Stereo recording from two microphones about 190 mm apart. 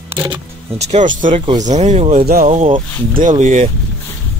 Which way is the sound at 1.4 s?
25° right (ahead or behind).